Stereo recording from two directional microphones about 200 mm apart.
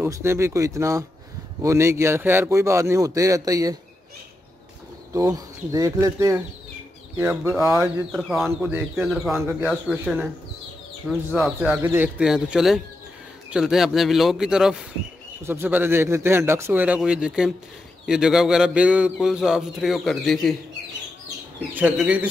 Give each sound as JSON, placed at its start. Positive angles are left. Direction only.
{"t": 0.0, "sound": "speech", "side_deg": -10}
{"t": 5.1, "sound": "speech", "side_deg": -15}
{"t": 8.1, "sound": "a man's voice", "side_deg": 0}
{"t": 21.7, "sound": "speech", "side_deg": -5}